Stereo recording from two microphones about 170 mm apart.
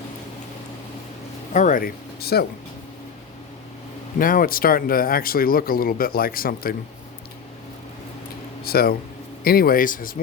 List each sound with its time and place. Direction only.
1.5 s speech: 50° left (ahead or behind); by 2.5 s 70° left (ahead or behind)
4.2 s speech: 55° left (ahead or behind)
8.6 s speech: 65° left (ahead or behind)